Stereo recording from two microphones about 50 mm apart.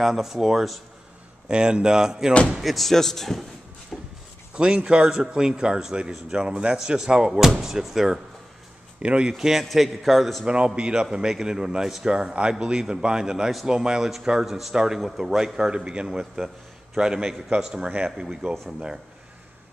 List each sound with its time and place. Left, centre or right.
0.0 s speech: centre
2.6 s a man's voice: centre
3.9 s shuffle: centre
4.6 s speech: centre
9.0 s speech: right
9.4 s a man's voice: centre
10.4 s speech: right
16.2 s a man's voice: centre